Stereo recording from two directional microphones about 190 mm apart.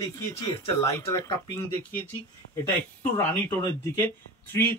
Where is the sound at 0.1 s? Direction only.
15° left (ahead or behind).